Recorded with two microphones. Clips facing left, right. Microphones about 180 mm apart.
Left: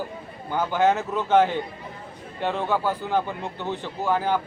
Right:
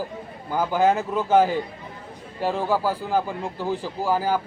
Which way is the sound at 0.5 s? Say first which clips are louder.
Right 1 dB; 10° right (ahead or behind).